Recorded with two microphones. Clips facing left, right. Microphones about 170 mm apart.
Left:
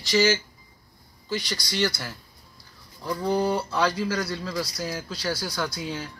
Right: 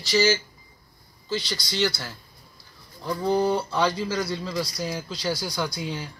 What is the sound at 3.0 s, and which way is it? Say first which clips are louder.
Fowl: right 1 dB; centre (ahead or behind).